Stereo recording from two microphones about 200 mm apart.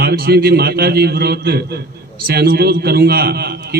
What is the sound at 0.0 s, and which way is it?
A man's voice, 50° right (ahead or behind).